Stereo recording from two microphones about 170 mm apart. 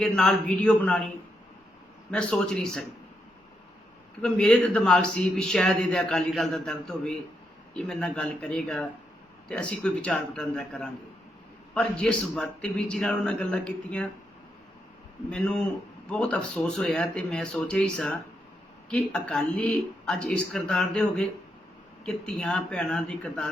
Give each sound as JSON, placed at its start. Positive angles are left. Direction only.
{"t": 0.0, "sound": "a man's voice", "side_deg": 5}
{"t": 4.2, "sound": "a man's voice", "side_deg": 5}
{"t": 15.3, "sound": "a man's voice", "side_deg": 5}